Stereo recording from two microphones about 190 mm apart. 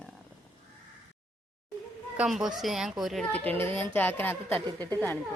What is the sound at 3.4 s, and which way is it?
A man's voice, 10° left (ahead or behind).